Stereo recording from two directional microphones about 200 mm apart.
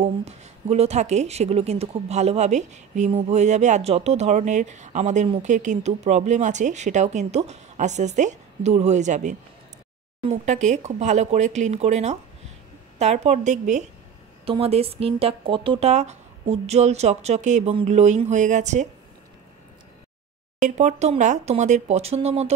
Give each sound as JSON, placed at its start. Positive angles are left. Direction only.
{"t": 0.0, "sound": "a woman's voice", "side_deg": -35}
{"t": 20.6, "sound": "a woman's voice", "side_deg": -35}